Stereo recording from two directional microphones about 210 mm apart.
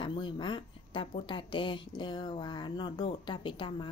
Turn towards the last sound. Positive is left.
turn(degrees=25)  # may be behind; listen again after turning